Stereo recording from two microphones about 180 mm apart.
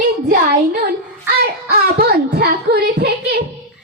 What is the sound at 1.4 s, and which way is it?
Child singing, 60° right (ahead or behind).